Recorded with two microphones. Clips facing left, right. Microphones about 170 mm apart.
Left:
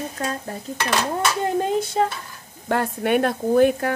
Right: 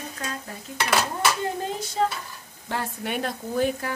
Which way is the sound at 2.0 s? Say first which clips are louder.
Left 3 dB; 60° left (ahead or behind).